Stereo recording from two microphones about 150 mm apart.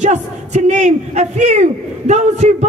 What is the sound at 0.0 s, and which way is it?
A man's voice, 50° right (ahead or behind).